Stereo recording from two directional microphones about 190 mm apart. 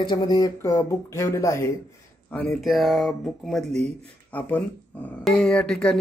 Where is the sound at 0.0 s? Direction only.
20° left (ahead or behind).